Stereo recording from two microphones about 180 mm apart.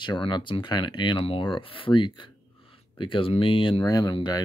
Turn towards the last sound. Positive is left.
turn(degrees=25)  # may be behind; listen again after turning